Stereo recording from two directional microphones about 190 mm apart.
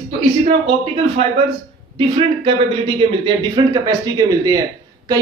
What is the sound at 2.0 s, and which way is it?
A man's voice, 30° right (ahead or behind).